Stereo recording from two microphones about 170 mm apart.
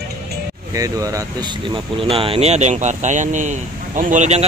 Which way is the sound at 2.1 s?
35° right (ahead or behind).